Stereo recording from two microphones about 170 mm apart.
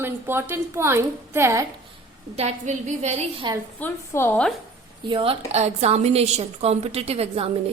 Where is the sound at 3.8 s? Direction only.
15° left (ahead or behind).